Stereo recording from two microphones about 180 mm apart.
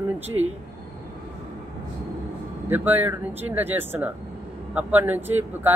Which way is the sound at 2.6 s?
10° right (ahead or behind).